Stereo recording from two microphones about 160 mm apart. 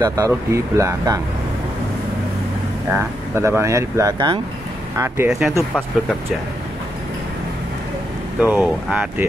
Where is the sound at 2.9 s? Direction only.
15° right (ahead or behind).